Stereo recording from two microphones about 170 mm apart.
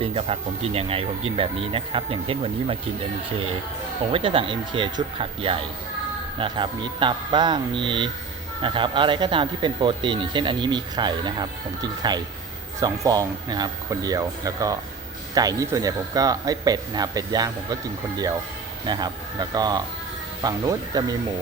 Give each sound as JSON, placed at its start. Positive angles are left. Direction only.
{"t": 0.0, "sound": "speech", "side_deg": -35}
{"t": 4.1, "sound": "speech", "side_deg": -30}
{"t": 18.9, "sound": "speech", "side_deg": -25}